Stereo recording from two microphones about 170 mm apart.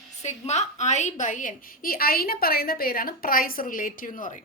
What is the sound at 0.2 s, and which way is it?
A woman's voice, 40° left (ahead or behind).